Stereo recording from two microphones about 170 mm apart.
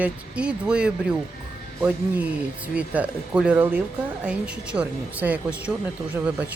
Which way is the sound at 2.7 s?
10° right (ahead or behind).